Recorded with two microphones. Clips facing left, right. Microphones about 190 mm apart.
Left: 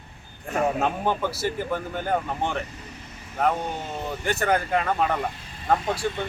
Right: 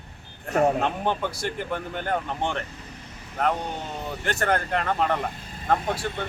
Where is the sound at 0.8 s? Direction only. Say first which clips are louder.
Left 1 dB; 5° left (ahead or behind).